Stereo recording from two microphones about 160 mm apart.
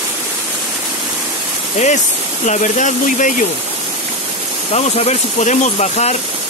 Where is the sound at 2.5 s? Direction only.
50° left (ahead or behind).